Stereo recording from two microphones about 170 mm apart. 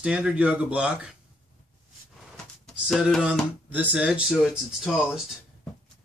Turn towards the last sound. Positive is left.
turn(degrees=0)  # may be behind; listen again after turning